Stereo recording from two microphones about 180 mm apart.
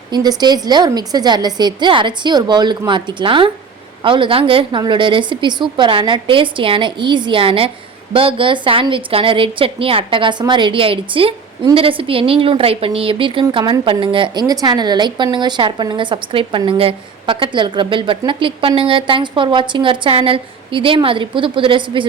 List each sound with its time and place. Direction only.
0.1 s a woman's voice: 20° right (ahead or behind)